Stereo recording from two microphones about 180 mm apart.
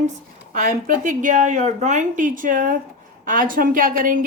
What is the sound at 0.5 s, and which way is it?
A woman's voice, 45° right (ahead or behind).